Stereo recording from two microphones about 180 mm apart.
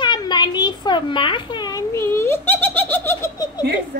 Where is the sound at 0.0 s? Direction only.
25° left (ahead or behind).